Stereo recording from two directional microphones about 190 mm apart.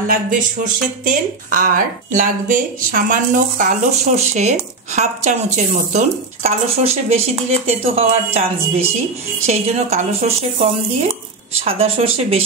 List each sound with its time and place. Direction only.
0.1 s speech: 45° right (ahead or behind); by 12.1 s 30° right (ahead or behind)